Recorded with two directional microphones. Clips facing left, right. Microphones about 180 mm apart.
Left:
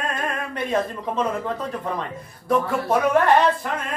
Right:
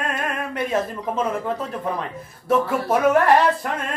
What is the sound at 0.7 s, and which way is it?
Speech, 5° right (ahead or behind).